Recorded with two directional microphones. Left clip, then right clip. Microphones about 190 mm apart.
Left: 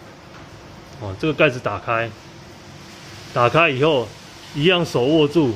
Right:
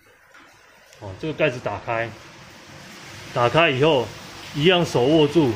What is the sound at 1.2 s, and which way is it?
Speech, 30° left (ahead or behind).